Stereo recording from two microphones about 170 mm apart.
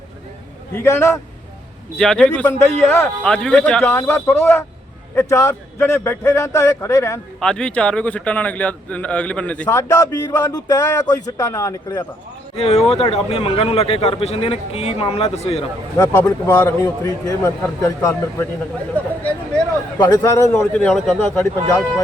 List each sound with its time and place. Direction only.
0.7 s a man's voice: 15° left (ahead or behind)
2.0 s a man's voice: 5° left (ahead or behind)
7.3 s a man's voice: 5° left (ahead or behind)
9.6 s a man's voice: 20° left (ahead or behind)
12.5 s speech: 40° left (ahead or behind)
16.0 s a man's voice: 20° left (ahead or behind)
20.0 s a man's voice: 20° left (ahead or behind)